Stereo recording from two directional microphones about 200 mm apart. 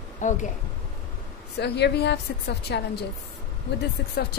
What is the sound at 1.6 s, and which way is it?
Speech, 55° left (ahead or behind).